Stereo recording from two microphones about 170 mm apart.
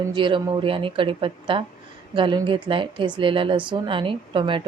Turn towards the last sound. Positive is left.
turn(degrees=-30)  # may be behind; listen again after turning